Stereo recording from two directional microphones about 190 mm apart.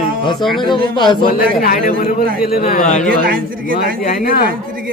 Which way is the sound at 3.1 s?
50° right (ahead or behind).